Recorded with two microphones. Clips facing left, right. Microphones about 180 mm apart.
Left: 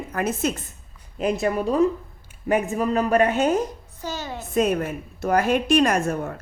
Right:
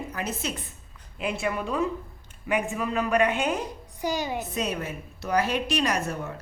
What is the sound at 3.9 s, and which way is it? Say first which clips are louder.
Speech: right 3 dB; 15° right (ahead or behind).